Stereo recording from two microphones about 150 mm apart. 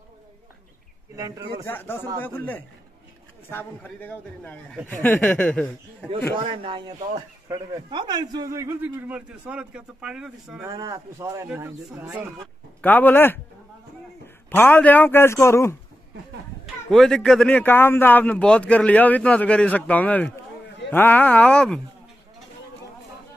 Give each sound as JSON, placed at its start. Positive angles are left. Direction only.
{"t": 1.1, "sound": "speech", "side_deg": -25}
{"t": 1.7, "sound": "speech", "side_deg": 15}
{"t": 6.3, "sound": "speech", "side_deg": -40}
{"t": 7.4, "sound": "a man's voice", "side_deg": -25}
{"t": 10.7, "sound": "a man's voice", "side_deg": -20}
{"t": 12.8, "sound": "a man's voice", "side_deg": 10}
{"t": 16.9, "sound": "speech", "side_deg": 5}